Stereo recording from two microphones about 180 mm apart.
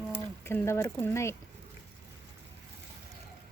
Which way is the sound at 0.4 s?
15° left (ahead or behind).